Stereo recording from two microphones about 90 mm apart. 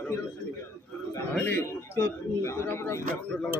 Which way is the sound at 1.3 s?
20° left (ahead or behind).